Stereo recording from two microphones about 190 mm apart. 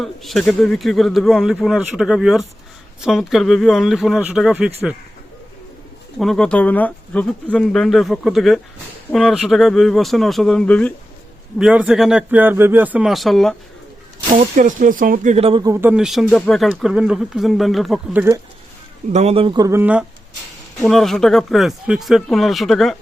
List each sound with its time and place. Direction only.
0.0 s speech: centre (ahead or behind)
6.1 s speech: centre (ahead or behind)
11.6 s speech: 5° right (ahead or behind)
14.3 s speech: 45° right (ahead or behind)
15.6 s speech: 10° right (ahead or behind)
19.1 s speech: 35° right (ahead or behind); by 23.0 s centre (ahead or behind)